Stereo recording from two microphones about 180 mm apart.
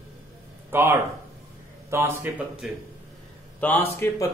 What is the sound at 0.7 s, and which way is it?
Speech, 15° right (ahead or behind).